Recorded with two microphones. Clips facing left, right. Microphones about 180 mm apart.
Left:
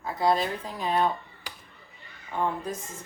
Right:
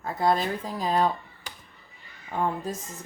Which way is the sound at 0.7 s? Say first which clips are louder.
Right 1 dB; 35° right (ahead or behind).